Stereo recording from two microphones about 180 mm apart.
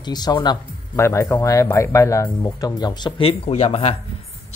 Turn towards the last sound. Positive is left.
turn(degrees=35)  # may be behind; listen again after turning